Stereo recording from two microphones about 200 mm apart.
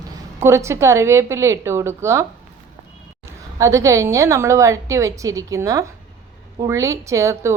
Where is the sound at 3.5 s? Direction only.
15° right (ahead or behind).